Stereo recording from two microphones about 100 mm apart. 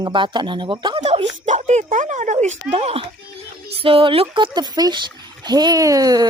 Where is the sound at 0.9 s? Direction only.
65° right (ahead or behind).